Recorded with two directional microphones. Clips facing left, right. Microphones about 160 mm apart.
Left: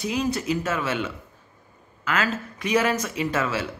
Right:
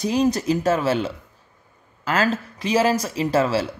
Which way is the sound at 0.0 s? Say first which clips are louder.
Right 6 dB; 35° right (ahead or behind).